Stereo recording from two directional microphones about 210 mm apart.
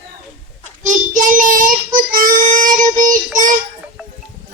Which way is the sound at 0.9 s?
35° right (ahead or behind).